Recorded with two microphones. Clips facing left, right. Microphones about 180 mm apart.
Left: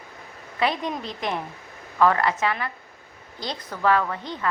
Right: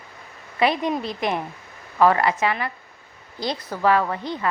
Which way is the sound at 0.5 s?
10° right (ahead or behind).